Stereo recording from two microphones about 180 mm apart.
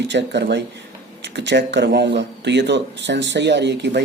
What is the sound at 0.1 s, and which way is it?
Speech, 75° right (ahead or behind).